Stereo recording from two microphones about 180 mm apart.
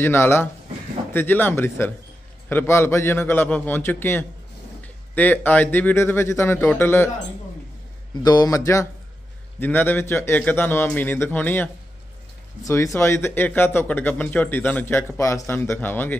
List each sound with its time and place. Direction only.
0.0 s speech: 15° left (ahead or behind)
8.2 s a man's voice: 20° left (ahead or behind)